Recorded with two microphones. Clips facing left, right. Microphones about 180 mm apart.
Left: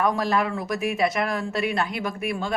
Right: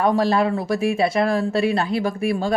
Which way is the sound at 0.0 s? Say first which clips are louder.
Right 5 dB; 30° right (ahead or behind).